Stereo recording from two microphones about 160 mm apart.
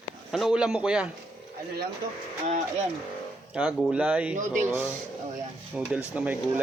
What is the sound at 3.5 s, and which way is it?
Speech, 5° right (ahead or behind).